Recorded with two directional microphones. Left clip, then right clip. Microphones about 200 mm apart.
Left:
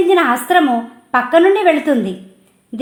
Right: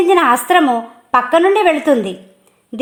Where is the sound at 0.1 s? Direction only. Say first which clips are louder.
Right 1 dB; 35° right (ahead or behind).